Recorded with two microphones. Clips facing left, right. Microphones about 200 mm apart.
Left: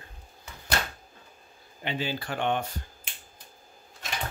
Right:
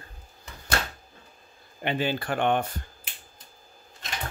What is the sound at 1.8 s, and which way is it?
Speech, 55° right (ahead or behind).